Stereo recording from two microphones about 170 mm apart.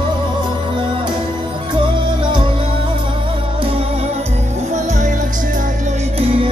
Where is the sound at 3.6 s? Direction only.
35° right (ahead or behind).